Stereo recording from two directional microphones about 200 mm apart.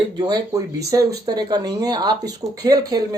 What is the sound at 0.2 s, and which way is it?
Speech, 20° right (ahead or behind).